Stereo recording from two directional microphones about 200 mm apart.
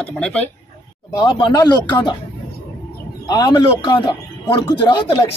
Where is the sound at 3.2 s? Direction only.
20° left (ahead or behind).